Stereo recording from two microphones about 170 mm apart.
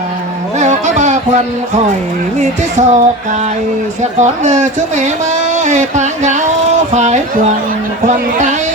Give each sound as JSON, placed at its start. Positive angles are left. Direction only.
{"t": 0.6, "sound": "a sound", "side_deg": -45}
{"t": 2.4, "sound": "music", "side_deg": -45}
{"t": 4.2, "sound": "speech", "side_deg": -45}